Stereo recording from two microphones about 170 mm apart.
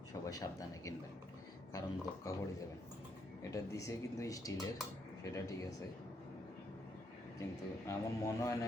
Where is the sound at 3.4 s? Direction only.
20° left (ahead or behind).